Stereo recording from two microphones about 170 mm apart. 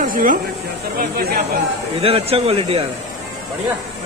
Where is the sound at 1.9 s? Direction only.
35° right (ahead or behind).